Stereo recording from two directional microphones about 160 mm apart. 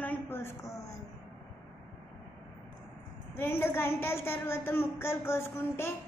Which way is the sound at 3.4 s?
15° left (ahead or behind).